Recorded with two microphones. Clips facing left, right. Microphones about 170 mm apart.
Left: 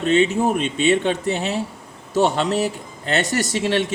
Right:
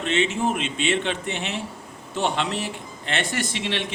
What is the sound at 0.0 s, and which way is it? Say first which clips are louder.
A man's voice: left 6 dB; 40° left (ahead or behind).